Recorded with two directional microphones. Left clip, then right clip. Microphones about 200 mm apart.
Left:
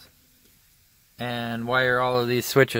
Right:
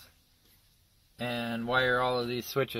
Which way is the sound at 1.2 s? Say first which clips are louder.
Left 4 dB; 30° left (ahead or behind).